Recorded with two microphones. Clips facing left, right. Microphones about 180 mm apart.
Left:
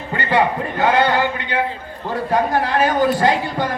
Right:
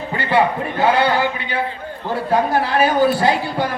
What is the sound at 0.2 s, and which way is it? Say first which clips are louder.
A man's voice: right 1 dB; 10° right (ahead or behind).